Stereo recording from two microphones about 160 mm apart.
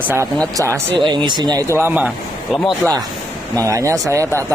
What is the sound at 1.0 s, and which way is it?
Speech, 30° right (ahead or behind).